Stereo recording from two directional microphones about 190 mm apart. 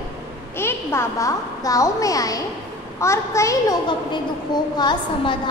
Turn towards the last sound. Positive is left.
turn(degrees=20)  # may be behind; listen again after turning